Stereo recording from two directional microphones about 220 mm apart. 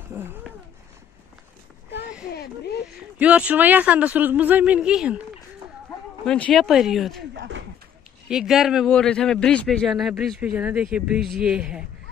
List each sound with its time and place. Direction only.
0.1 s speech: 10° right (ahead or behind)
2.3 s speech: 45° left (ahead or behind)
3.2 s speech: 5° right (ahead or behind)
6.2 s a man's voice: 5° left (ahead or behind)
7.3 s a sound: 55° right (ahead or behind)
8.3 s a man's voice: centre (ahead or behind)